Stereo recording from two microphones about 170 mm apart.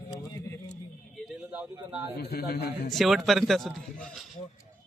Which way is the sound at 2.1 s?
65° left (ahead or behind).